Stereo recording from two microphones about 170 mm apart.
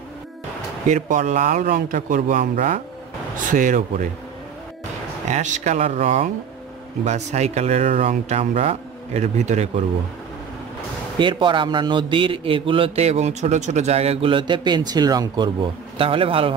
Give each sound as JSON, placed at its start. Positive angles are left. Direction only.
{"t": 0.8, "sound": "a man's voice", "side_deg": -50}
{"t": 5.3, "sound": "a man's voice", "side_deg": -45}
{"t": 11.1, "sound": "a man's voice", "side_deg": -30}